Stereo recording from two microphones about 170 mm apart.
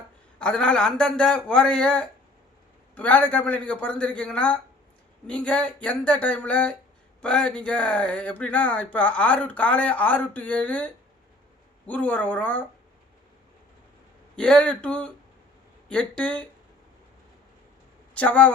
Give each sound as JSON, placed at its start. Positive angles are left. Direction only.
{"t": 0.3, "sound": "a man's voice", "side_deg": 5}
{"t": 14.3, "sound": "speech", "side_deg": 5}
{"t": 18.1, "sound": "speech", "side_deg": 10}